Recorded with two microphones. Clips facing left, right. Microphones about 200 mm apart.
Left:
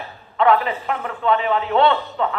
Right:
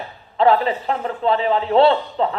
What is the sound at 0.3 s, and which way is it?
A man's voice, 30° right (ahead or behind).